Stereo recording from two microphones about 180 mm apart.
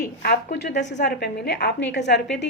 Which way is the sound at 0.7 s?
40° left (ahead or behind).